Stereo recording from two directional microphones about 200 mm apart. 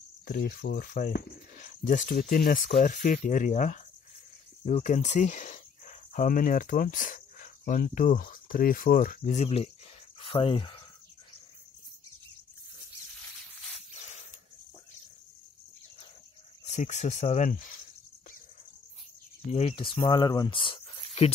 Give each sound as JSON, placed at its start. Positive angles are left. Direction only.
{"t": 0.2, "sound": "speech", "side_deg": 50}
{"t": 16.6, "sound": "speech", "side_deg": 35}
{"t": 19.5, "sound": "speech", "side_deg": 30}